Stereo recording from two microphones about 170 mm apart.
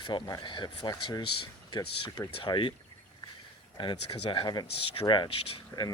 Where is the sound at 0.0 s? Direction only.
25° left (ahead or behind).